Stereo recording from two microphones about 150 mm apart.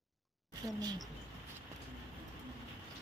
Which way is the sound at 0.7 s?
25° right (ahead or behind).